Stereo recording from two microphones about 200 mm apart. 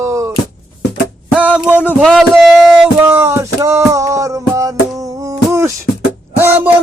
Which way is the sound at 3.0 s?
10° right (ahead or behind).